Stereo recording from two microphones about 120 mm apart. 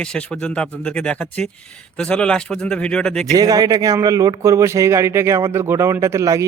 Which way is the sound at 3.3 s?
30° right (ahead or behind).